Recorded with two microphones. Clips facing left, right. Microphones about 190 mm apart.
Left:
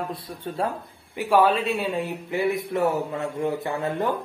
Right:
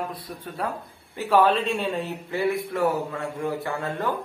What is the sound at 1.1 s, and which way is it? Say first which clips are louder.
A man's voice: even; 10° left (ahead or behind).